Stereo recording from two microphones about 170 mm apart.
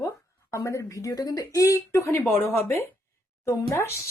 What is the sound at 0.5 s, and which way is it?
Speech, 15° left (ahead or behind).